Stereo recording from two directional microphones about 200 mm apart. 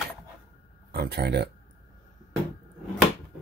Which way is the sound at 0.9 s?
55° right (ahead or behind).